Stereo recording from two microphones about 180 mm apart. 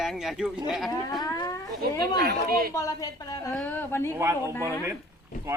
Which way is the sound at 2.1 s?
60° right (ahead or behind).